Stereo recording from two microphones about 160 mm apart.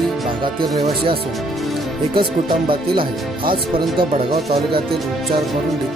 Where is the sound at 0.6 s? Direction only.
35° right (ahead or behind).